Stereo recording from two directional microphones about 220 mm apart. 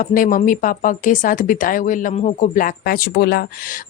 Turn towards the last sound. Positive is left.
turn(degrees=45)  # may be behind; listen again after turning